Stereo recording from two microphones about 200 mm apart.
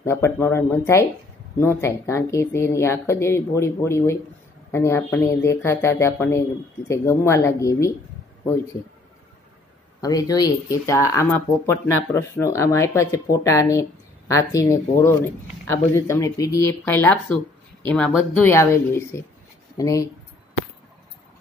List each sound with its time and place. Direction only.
0.0 s speech: 15° left (ahead or behind)
10.0 s speech: 20° left (ahead or behind)